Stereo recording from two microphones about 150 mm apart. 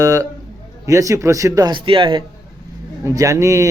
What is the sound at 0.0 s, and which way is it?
Speech, 25° right (ahead or behind).